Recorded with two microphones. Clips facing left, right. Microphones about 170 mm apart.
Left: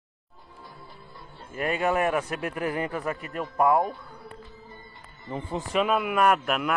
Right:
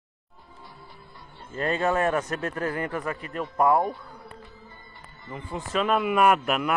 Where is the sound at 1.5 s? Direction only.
15° left (ahead or behind).